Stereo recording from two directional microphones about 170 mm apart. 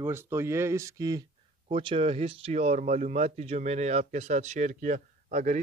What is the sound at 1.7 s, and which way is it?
Speech, 30° right (ahead or behind).